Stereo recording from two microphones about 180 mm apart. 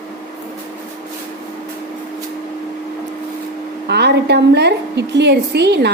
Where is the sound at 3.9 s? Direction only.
70° right (ahead or behind).